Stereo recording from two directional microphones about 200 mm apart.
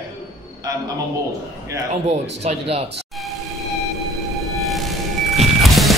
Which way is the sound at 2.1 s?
30° right (ahead or behind).